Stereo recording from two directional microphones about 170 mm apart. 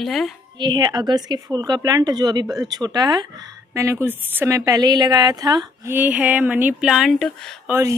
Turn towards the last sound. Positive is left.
turn(degrees=-15)  # may be behind; listen again after turning